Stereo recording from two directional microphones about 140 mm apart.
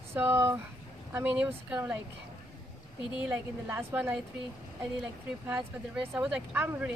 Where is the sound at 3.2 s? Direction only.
15° right (ahead or behind).